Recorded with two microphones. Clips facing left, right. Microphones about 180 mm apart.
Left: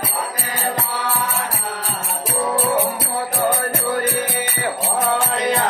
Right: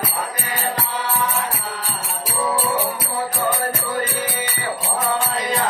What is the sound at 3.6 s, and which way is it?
Music, 60° left (ahead or behind).